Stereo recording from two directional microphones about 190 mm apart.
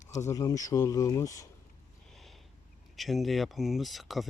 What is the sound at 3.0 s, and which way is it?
Speech, centre (ahead or behind).